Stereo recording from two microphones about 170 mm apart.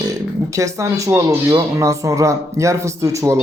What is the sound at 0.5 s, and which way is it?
Speech, 15° right (ahead or behind).